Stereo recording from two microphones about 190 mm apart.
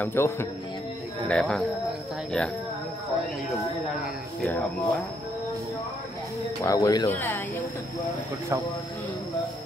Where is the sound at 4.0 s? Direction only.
Centre (ahead or behind).